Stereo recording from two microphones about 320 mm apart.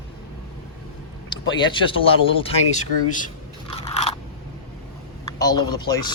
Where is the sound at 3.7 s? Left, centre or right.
Centre.